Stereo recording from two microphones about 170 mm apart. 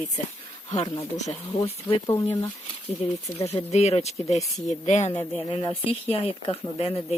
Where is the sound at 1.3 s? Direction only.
35° left (ahead or behind).